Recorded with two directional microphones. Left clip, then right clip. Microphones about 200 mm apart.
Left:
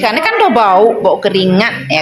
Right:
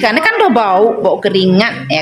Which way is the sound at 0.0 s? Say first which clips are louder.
Even; 35° right (ahead or behind).